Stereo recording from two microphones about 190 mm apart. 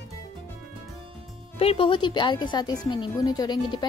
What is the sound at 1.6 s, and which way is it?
Speech, 30° left (ahead or behind).